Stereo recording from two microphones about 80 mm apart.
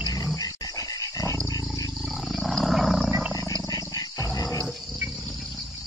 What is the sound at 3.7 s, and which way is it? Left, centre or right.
Wild animals, left.